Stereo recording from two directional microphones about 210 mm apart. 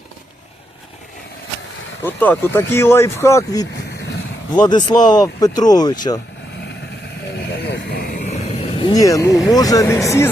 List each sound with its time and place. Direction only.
2.0 s speech: 10° left (ahead or behind)
4.9 s speech: 20° left (ahead or behind)
7.5 s speech: 50° left (ahead or behind); by 9.3 s 15° left (ahead or behind)
9.3 s speech: centre (ahead or behind)
9.6 s speech: 15° left (ahead or behind)